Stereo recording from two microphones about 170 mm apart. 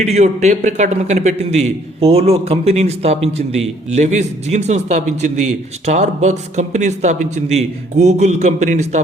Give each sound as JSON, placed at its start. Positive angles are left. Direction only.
{"t": 0.0, "sound": "a man's voice", "side_deg": -40}